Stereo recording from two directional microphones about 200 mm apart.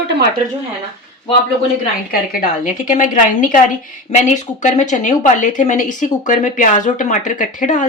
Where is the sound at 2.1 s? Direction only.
45° left (ahead or behind).